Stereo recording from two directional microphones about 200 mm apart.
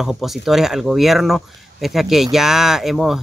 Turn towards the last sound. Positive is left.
turn(degrees=0)  # may be behind; listen again after turning